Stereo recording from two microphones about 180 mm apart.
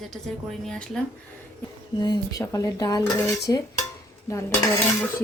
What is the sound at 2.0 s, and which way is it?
Speech, 20° left (ahead or behind).